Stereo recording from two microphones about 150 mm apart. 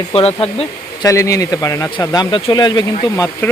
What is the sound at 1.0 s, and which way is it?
Speech, 20° left (ahead or behind).